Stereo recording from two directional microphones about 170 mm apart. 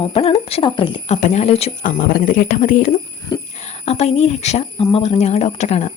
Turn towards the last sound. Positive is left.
turn(degrees=40)  # may be behind; listen again after turning